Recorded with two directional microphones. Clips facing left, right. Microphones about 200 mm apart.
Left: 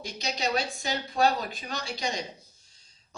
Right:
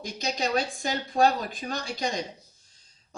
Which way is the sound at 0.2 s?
50° right (ahead or behind).